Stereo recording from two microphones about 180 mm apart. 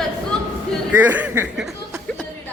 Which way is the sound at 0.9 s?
10° right (ahead or behind).